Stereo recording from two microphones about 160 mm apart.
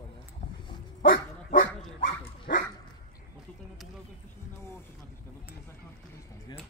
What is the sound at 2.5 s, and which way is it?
Dog, 65° left (ahead or behind).